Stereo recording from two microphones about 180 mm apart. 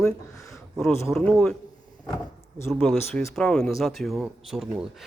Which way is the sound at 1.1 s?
5° left (ahead or behind).